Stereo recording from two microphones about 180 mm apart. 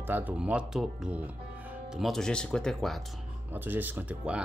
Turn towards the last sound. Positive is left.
turn(degrees=-10)  # may be behind; listen again after turning